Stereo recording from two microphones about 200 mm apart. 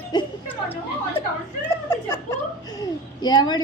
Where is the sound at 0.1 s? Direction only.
20° left (ahead or behind).